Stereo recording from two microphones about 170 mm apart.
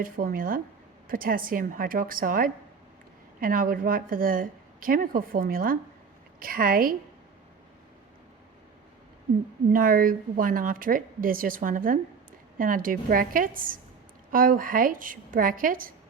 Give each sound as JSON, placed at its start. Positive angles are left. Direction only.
{"t": 0.0, "sound": "a woman's voice", "side_deg": -55}
{"t": 9.7, "sound": "a woman's voice", "side_deg": -55}